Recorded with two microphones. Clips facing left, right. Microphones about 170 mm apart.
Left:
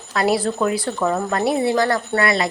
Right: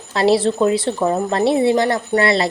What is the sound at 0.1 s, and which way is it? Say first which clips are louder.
A woman's voice: right 4 dB; 25° right (ahead or behind).